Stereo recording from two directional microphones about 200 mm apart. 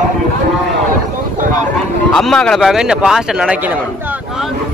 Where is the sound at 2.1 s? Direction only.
Centre (ahead or behind).